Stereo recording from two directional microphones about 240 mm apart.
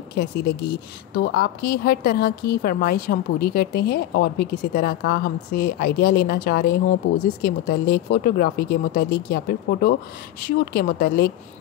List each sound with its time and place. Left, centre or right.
0.1 s a woman's voice: left